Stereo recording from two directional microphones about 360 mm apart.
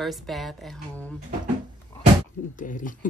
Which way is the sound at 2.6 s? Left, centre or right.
Left.